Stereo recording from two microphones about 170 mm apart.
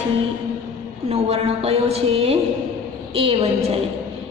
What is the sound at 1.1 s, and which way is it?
A woman's voice, 35° right (ahead or behind).